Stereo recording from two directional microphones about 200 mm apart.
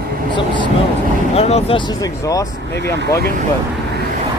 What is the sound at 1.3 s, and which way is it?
Speech, 30° left (ahead or behind).